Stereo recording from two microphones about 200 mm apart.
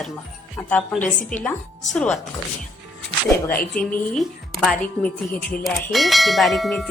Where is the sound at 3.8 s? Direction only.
5° left (ahead or behind).